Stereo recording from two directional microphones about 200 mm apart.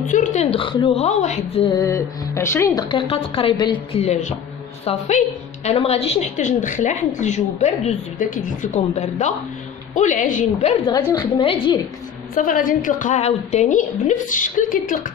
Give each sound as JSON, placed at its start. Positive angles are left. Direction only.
{"t": 0.1, "sound": "a woman's voice", "side_deg": 35}
{"t": 1.8, "sound": "a woman's voice", "side_deg": 15}
{"t": 10.9, "sound": "a woman's voice", "side_deg": 20}
{"t": 12.4, "sound": "a woman's voice", "side_deg": 45}